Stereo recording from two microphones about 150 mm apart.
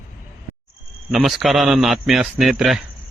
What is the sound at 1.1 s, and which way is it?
A man's voice, centre (ahead or behind).